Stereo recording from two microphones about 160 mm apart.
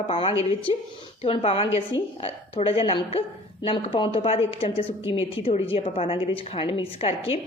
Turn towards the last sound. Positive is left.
turn(degrees=35)  # may be behind; listen again after turning